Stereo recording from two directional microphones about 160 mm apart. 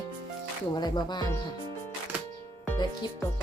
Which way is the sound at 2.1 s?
10° right (ahead or behind).